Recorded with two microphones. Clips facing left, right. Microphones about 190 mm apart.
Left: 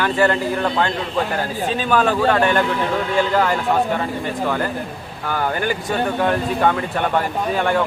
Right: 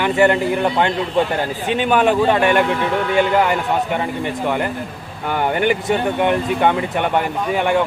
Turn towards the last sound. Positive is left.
turn(degrees=-15)  # may be behind; listen again after turning